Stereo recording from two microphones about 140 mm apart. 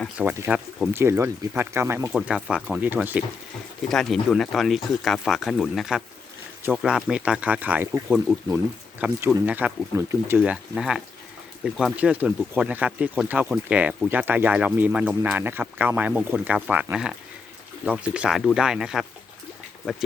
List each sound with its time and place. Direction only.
0.2 s speech: 15° right (ahead or behind)
2.1 s speech: 5° right (ahead or behind)
3.8 s speech: 5° left (ahead or behind)